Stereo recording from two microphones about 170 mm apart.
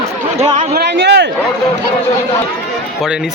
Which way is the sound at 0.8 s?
80° right.